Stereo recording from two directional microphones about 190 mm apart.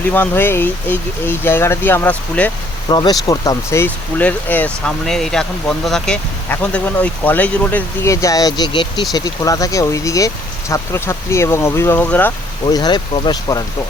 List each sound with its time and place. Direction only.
0.1 s speech: 10° left (ahead or behind)
2.9 s speech: 20° left (ahead or behind)
12.6 s speech: 20° left (ahead or behind)